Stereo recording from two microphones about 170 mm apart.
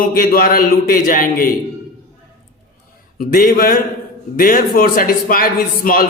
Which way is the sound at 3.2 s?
60° left (ahead or behind).